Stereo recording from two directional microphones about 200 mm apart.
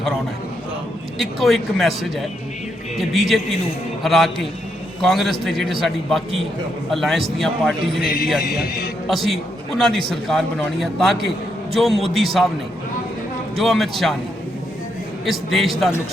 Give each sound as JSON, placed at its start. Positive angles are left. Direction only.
{"t": 1.2, "sound": "a man's voice", "side_deg": 0}
{"t": 9.0, "sound": "a man's voice", "side_deg": 0}
{"t": 13.6, "sound": "a man's voice", "side_deg": 0}
{"t": 15.3, "sound": "a man's voice", "side_deg": 0}